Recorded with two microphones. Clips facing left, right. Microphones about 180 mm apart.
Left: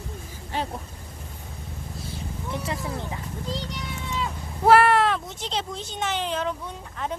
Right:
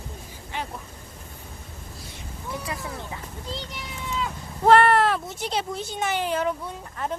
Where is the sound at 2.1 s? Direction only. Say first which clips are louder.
Left 2 dB; 30° left (ahead or behind).